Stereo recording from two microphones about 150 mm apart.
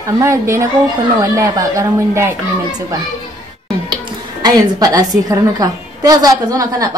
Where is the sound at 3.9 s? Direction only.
30° right (ahead or behind).